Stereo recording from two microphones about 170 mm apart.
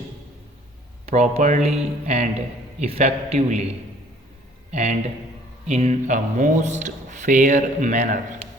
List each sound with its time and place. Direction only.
1.0 s speech: 40° right (ahead or behind)
4.7 s speech: 45° right (ahead or behind)